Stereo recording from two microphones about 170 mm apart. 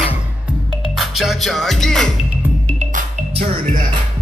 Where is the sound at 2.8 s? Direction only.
45° right (ahead or behind).